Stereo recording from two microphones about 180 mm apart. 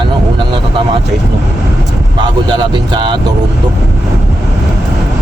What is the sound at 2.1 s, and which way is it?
Speech, 25° right (ahead or behind).